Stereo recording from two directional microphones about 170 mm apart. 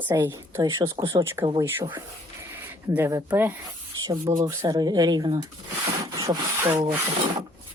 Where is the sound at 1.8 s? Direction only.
25° right (ahead or behind).